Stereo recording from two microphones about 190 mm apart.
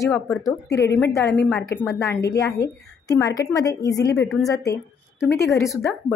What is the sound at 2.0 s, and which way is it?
A woman's voice, 20° left (ahead or behind).